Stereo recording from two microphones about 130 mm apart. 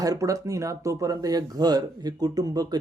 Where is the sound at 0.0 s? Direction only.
25° right (ahead or behind).